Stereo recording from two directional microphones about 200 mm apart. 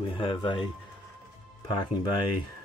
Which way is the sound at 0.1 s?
25° left (ahead or behind).